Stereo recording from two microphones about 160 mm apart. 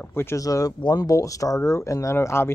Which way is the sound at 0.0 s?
15° left (ahead or behind).